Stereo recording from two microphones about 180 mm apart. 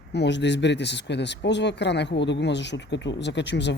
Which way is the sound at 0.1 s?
75° left (ahead or behind).